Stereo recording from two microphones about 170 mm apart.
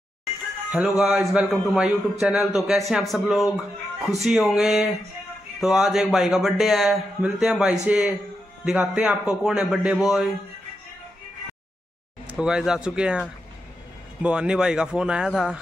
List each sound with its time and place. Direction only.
0.7 s a man's voice: 10° right (ahead or behind)
12.3 s a man's voice: 5° right (ahead or behind)
14.2 s a man's voice: 5° right (ahead or behind)